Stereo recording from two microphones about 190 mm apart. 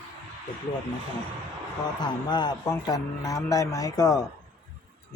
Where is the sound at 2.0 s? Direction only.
25° left (ahead or behind).